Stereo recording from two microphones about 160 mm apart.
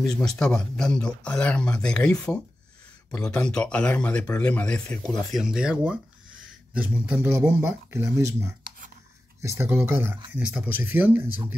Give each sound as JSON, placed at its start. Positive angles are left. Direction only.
{"t": 0.1, "sound": "speech", "side_deg": 5}